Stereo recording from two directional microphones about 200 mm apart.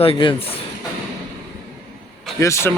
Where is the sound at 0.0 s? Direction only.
25° left (ahead or behind).